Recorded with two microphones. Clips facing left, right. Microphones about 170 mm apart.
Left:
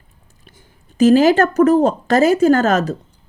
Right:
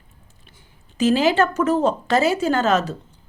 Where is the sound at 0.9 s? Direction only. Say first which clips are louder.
Left 6 dB; 45° left (ahead or behind).